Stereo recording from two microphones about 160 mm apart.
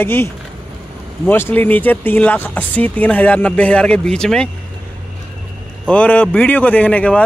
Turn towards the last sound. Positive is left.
turn(degrees=10)  # may be behind; listen again after turning